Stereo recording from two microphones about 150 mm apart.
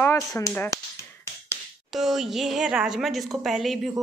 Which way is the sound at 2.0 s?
Centre (ahead or behind).